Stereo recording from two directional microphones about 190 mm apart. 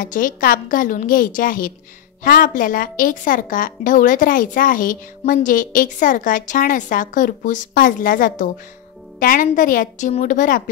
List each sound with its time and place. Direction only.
0.0 s a woman's voice: 45° left (ahead or behind)